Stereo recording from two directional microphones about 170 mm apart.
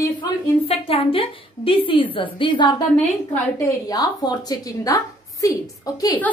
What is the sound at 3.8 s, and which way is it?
A woman's voice, 20° left (ahead or behind).